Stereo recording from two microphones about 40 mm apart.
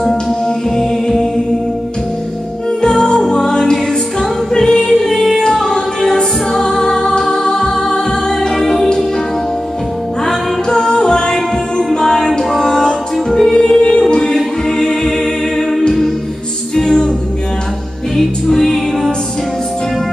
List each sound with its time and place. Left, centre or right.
0.7 s music: centre
2.8 s music: centre
10.2 s music: centre
14.3 s a capella: centre
16.7 s music: centre
18.1 s music: centre